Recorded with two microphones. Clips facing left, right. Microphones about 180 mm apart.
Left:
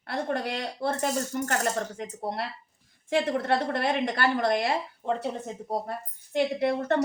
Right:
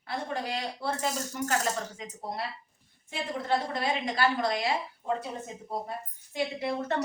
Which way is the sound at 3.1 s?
85° left.